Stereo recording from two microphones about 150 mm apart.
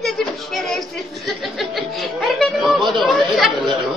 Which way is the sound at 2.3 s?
Centre (ahead or behind).